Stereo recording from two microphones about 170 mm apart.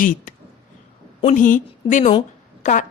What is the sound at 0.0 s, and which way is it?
A woman's voice, 50° left (ahead or behind).